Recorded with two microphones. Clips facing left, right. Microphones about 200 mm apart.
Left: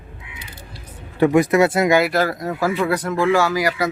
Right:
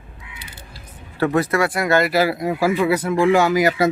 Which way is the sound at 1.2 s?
15° left (ahead or behind).